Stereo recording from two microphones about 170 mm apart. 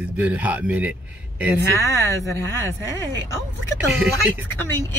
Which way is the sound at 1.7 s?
20° left (ahead or behind).